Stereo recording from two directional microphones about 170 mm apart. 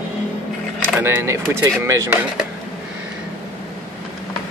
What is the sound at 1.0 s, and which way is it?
Speech, 15° right (ahead or behind).